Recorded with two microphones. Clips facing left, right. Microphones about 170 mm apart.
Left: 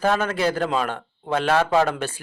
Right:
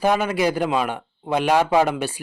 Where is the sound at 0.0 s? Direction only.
15° right (ahead or behind).